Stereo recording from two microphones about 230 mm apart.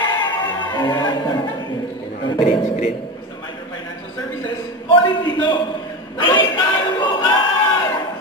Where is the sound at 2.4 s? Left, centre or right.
Left.